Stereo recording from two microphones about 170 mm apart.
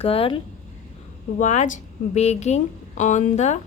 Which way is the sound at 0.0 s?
35° left (ahead or behind).